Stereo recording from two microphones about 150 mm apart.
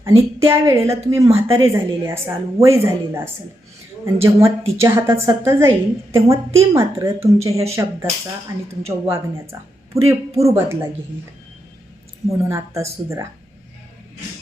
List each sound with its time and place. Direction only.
0.0 s a woman's voice: 20° right (ahead or behind)
12.5 s a woman's voice: 20° right (ahead or behind)